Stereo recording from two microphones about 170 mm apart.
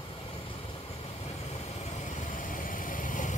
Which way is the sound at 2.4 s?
50° left (ahead or behind).